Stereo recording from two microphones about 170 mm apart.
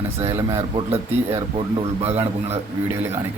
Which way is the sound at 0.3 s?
15° right (ahead or behind).